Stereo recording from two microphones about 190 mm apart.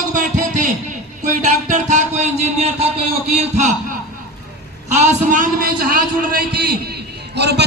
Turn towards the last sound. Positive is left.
turn(degrees=-60)  # may be behind; listen again after turning